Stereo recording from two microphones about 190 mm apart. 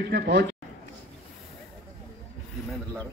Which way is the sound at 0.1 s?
60° right (ahead or behind).